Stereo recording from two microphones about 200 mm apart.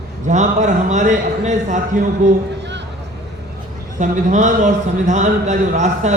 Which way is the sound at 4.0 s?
40° right (ahead or behind).